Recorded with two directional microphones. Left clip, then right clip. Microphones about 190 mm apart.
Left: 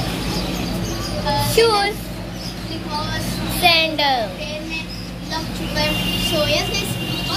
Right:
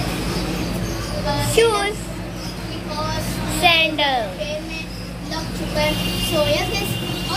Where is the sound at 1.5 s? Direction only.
10° left (ahead or behind).